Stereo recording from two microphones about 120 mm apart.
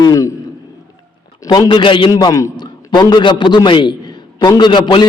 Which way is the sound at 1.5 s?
40° left (ahead or behind).